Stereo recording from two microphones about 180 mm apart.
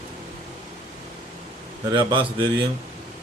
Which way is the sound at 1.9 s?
25° right (ahead or behind).